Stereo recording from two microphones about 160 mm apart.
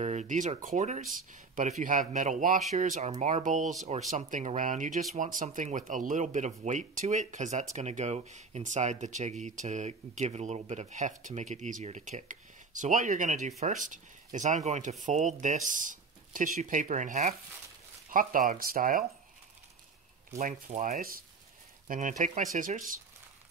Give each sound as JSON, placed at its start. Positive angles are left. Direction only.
{"t": 0.0, "sound": "a man's voice", "side_deg": -45}
{"t": 20.3, "sound": "a man's voice", "side_deg": -50}